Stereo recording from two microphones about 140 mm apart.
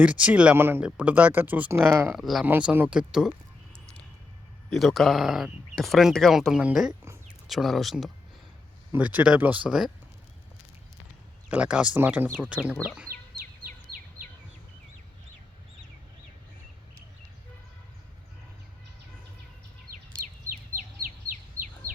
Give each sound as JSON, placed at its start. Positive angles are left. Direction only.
{"t": 0.0, "sound": "speech", "side_deg": -10}
{"t": 2.1, "sound": "speech", "side_deg": 0}
{"t": 4.7, "sound": "speech", "side_deg": 0}
{"t": 8.9, "sound": "speech", "side_deg": -10}
{"t": 11.5, "sound": "speech", "side_deg": -5}